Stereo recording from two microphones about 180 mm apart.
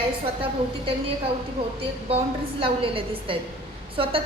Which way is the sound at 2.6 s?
30° right (ahead or behind).